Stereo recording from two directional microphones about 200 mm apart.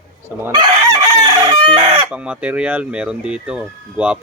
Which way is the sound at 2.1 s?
5° right (ahead or behind).